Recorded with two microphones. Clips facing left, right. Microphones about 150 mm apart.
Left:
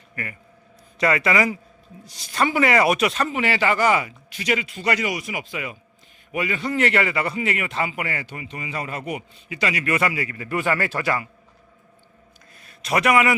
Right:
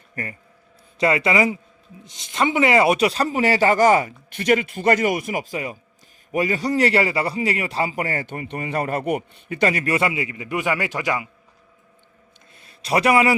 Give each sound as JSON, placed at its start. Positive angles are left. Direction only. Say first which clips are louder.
{"t": 0.9, "sound": "a man's voice", "louder": "right 2 dB", "side_deg": -25}
{"t": 9.9, "sound": "a man's voice", "louder": "right 1 dB", "side_deg": -25}
{"t": 12.5, "sound": "a man's voice", "louder": "right 2 dB", "side_deg": -30}